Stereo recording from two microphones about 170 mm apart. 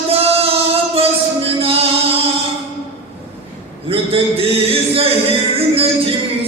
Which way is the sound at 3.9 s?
35° right (ahead or behind).